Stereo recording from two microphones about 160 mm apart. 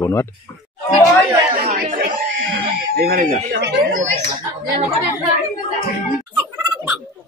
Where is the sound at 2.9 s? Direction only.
70° right (ahead or behind); by 4.0 s 90° right.